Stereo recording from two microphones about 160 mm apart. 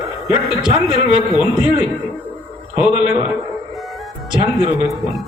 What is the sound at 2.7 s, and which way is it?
Speech, 10° right (ahead or behind).